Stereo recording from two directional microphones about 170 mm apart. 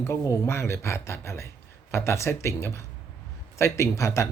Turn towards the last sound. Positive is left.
turn(degrees=15)  # may be behind; listen again after turning